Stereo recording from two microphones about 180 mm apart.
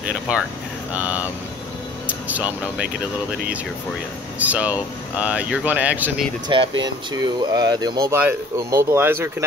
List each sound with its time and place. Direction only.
0.0 s a sound: 5° right (ahead or behind)
0.9 s speech: 10° right (ahead or behind)
4.4 s speech: 10° right (ahead or behind)
6.5 s speech: 25° right (ahead or behind)